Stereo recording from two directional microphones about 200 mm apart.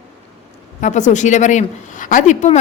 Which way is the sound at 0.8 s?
35° left (ahead or behind).